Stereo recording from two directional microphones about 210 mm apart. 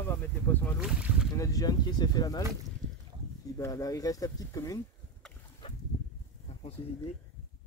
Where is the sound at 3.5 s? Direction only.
15° left (ahead or behind).